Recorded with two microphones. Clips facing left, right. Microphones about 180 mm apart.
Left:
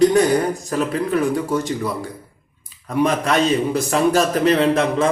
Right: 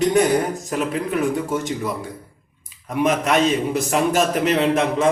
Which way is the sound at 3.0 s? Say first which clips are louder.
Even; 20° right (ahead or behind).